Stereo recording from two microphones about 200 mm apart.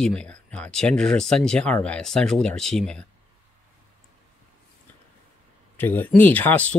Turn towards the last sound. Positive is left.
turn(degrees=10)  # may be behind; listen again after turning